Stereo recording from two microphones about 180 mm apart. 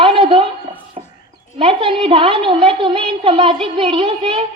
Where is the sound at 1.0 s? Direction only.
35° right (ahead or behind).